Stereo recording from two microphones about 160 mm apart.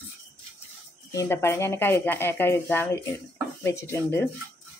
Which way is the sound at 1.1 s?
15° left (ahead or behind).